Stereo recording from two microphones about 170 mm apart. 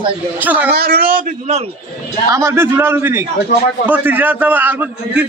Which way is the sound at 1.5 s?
40° right (ahead or behind).